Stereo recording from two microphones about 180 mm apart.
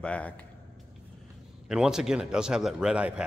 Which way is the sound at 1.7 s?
5° right (ahead or behind).